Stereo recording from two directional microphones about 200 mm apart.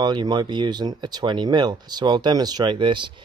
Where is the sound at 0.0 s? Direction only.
20° right (ahead or behind).